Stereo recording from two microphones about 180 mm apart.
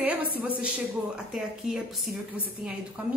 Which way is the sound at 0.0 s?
10° right (ahead or behind).